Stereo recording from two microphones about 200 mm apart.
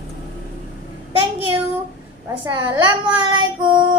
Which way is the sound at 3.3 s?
25° right (ahead or behind).